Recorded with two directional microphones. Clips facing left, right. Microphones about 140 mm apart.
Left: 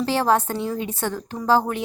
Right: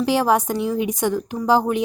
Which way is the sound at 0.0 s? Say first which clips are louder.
Right 2 dB; 15° right (ahead or behind).